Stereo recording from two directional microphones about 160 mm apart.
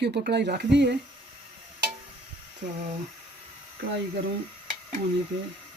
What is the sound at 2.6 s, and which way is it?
Speech, 55° right (ahead or behind).